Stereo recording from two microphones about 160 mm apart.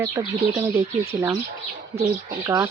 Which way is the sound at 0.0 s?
20° right (ahead or behind).